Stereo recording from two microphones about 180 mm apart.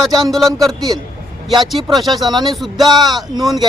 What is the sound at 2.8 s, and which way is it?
Speech, 20° right (ahead or behind).